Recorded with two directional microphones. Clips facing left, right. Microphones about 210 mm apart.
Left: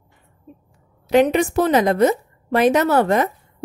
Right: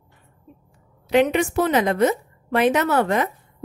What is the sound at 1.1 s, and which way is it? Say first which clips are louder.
A woman's voice: left 3 dB; 40° left (ahead or behind).